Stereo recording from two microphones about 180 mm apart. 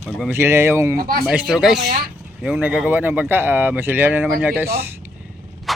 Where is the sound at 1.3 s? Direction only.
5° right (ahead or behind).